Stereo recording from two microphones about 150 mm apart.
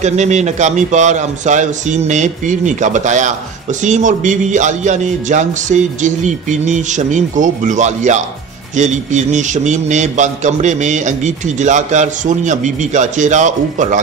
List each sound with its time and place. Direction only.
0.0 s a man's voice: 50° right (ahead or behind)